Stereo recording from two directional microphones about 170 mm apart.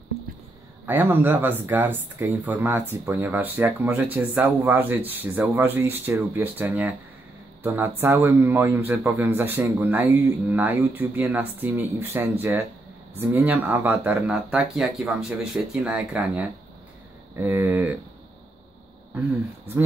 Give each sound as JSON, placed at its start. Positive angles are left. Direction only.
{"t": 0.8, "sound": "speech", "side_deg": -10}